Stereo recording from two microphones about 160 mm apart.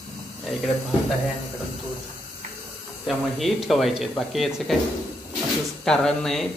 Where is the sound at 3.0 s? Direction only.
Centre (ahead or behind).